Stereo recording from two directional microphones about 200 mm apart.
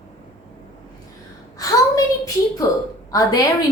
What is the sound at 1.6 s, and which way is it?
A child's voice, 15° left (ahead or behind).